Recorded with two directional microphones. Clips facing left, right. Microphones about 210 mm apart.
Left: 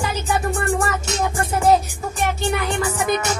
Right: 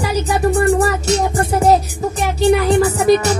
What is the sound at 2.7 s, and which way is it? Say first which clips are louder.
Music: right 9 dB; 35° right (ahead or behind).